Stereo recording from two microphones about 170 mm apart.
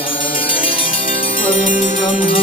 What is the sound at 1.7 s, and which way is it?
Music, 50° left (ahead or behind).